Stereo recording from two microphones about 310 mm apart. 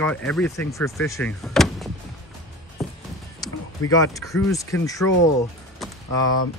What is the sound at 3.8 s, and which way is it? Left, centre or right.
Speech, left.